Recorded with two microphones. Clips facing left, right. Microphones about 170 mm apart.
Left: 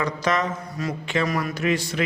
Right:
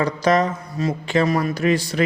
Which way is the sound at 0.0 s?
35° right (ahead or behind).